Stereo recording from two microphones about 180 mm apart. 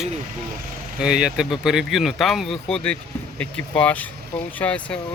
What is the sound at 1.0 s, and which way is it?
Speech, 5° right (ahead or behind).